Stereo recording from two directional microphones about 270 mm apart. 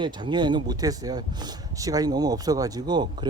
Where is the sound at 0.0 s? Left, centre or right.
Centre.